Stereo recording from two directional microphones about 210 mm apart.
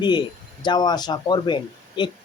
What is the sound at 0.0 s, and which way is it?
Speech, 20° left (ahead or behind).